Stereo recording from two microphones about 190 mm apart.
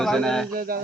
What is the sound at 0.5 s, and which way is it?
Speech, 50° right (ahead or behind).